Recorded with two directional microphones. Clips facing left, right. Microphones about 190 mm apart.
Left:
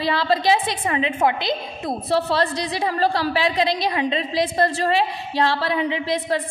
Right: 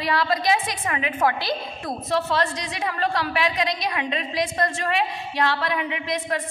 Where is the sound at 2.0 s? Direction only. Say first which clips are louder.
Left 3 dB; 30° left (ahead or behind).